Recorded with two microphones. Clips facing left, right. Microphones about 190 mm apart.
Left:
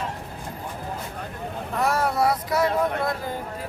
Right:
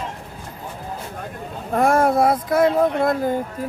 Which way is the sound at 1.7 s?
50° right (ahead or behind).